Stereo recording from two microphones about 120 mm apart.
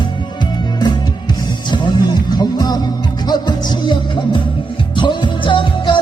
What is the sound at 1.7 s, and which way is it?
Music, 40° left (ahead or behind).